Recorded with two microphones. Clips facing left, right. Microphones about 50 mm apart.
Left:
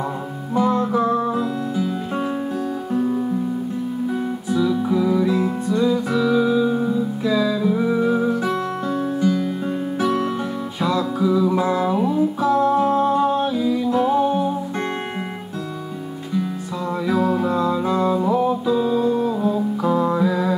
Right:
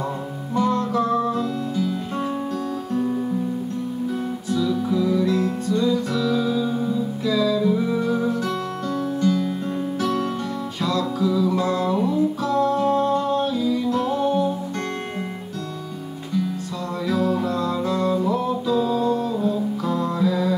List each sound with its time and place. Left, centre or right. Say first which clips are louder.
0.6 s music: left 2 dB; centre
4.6 s music: left 3 dB; centre
16.9 s music: left 2 dB; centre